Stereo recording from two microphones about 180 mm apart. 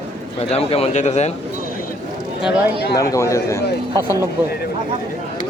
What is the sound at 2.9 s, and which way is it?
Speech, 20° left (ahead or behind).